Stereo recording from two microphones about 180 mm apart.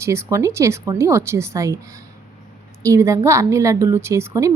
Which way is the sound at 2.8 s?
15° right (ahead or behind).